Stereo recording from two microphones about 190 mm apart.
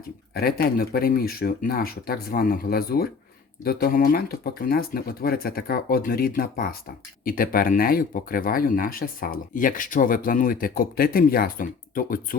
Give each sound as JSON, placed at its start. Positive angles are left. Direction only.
{"t": 0.3, "sound": "speech", "side_deg": 55}